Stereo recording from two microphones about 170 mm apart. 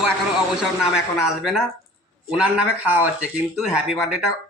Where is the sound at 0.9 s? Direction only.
5° right (ahead or behind).